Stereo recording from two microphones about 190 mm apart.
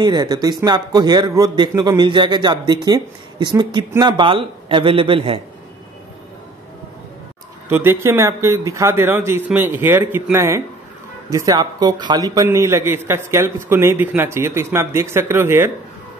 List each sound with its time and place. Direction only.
0.0 s a man's voice: 20° right (ahead or behind)
7.7 s a man's voice: 10° right (ahead or behind)